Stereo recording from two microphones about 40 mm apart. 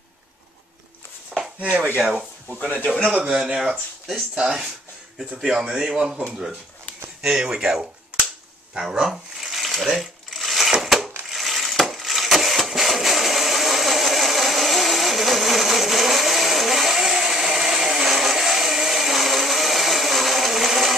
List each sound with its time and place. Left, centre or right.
1.3 s chopping: centre
2.0 s a man's voice: centre
3.2 s a man's voice: right
7.2 s a man's voice: centre
8.1 s cap gun: right
8.7 s shuffling cards: centre
9.9 s coin: centre
10.8 s a sound: centre
11.2 s engine: centre